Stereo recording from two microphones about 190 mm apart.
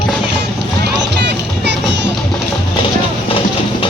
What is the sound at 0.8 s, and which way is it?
Music, 65° right (ahead or behind).